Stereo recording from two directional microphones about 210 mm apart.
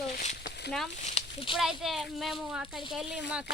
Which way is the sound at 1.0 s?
25° left (ahead or behind).